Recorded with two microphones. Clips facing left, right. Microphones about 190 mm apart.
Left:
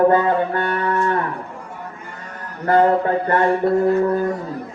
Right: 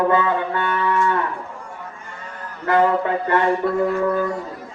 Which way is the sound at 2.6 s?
50° left (ahead or behind).